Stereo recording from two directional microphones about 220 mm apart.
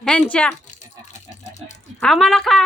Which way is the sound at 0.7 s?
35° left (ahead or behind).